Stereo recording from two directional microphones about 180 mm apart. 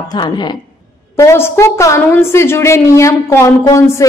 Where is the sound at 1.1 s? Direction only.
15° left (ahead or behind).